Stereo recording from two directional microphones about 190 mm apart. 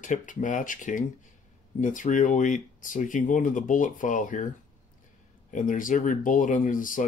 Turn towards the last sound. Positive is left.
turn(degrees=45)  # may be behind; listen again after turning